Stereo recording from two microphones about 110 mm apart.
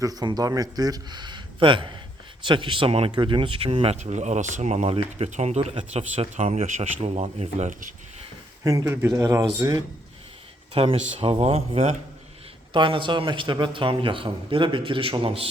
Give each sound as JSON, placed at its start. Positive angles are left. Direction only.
{"t": 0.0, "sound": "a man's voice", "side_deg": -35}
{"t": 3.1, "sound": "speech", "side_deg": -45}
{"t": 5.7, "sound": "speech", "side_deg": -70}
{"t": 8.6, "sound": "speech", "side_deg": -30}
{"t": 10.8, "sound": "speech", "side_deg": -60}
{"t": 12.7, "sound": "a man's voice", "side_deg": -50}